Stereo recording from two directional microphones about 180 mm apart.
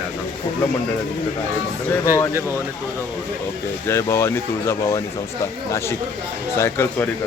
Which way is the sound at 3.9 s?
15° left (ahead or behind).